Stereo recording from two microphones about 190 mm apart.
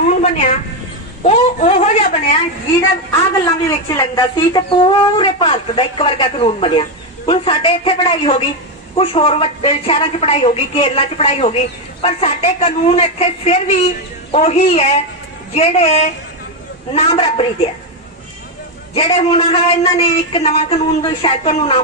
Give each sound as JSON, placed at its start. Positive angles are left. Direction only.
{"t": 0.1, "sound": "cat", "side_deg": 35}
{"t": 1.2, "sound": "a woman's voice", "side_deg": 35}
{"t": 3.1, "sound": "a woman's voice", "side_deg": 20}
{"t": 18.9, "sound": "a woman's voice", "side_deg": 30}